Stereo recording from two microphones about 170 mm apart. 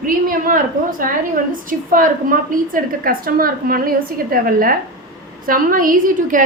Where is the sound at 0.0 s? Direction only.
55° right (ahead or behind).